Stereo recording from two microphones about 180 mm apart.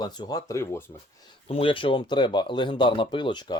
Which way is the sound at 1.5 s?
30° left (ahead or behind).